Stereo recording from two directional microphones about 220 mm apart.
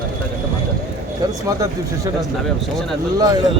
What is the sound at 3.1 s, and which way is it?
Speech, 20° right (ahead or behind).